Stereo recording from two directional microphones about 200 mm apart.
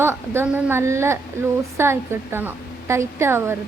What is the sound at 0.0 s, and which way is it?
A woman's voice, 10° right (ahead or behind).